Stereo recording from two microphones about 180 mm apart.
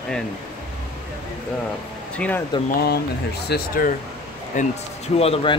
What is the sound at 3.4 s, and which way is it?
Speech, 55° left (ahead or behind).